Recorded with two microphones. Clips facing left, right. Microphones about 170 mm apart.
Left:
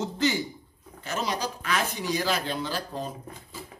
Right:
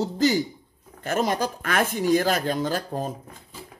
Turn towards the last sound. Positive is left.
turn(degrees=-50)  # may be behind; listen again after turning